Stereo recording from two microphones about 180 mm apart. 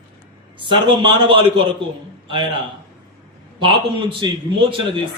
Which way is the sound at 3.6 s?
30° right (ahead or behind).